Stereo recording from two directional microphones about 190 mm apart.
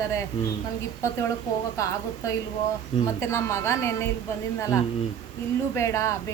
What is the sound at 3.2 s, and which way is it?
Speech, 15° left (ahead or behind).